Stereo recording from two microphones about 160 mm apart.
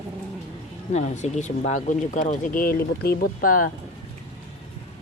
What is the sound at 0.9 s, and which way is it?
Speech, 45° left (ahead or behind).